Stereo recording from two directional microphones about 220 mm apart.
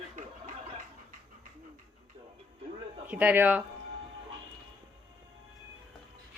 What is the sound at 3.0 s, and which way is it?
Speech, 5° right (ahead or behind).